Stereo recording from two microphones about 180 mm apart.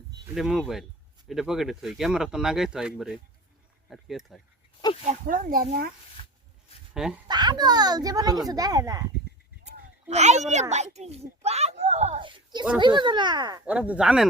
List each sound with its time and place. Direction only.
0.3 s speech: 5° right (ahead or behind)
5.0 s speech: 50° right (ahead or behind)
6.2 s a sound: 30° left (ahead or behind)
6.9 s speech: 5° right (ahead or behind)
7.3 s a child's voice: 25° right (ahead or behind)
9.6 s a child's voice: 40° right (ahead or behind)
13.7 s speech: 10° right (ahead or behind)